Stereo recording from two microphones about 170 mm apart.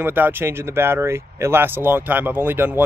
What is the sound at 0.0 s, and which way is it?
Speech, 10° right (ahead or behind).